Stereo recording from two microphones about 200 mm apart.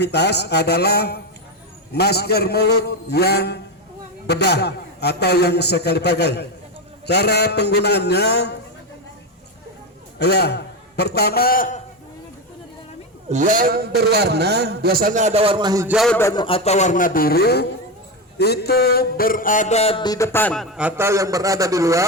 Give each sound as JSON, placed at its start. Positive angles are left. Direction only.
{"t": 0.0, "sound": "a man's voice", "side_deg": 55}
{"t": 10.2, "sound": "a man's voice", "side_deg": 55}
{"t": 13.2, "sound": "a man's voice", "side_deg": -35}
{"t": 16.0, "sound": "a man's voice", "side_deg": 5}
{"t": 16.2, "sound": "a man's voice", "side_deg": 20}
{"t": 18.3, "sound": "a sound", "side_deg": 55}